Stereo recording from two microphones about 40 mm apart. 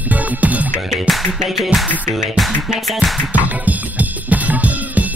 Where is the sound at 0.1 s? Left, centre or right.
Right.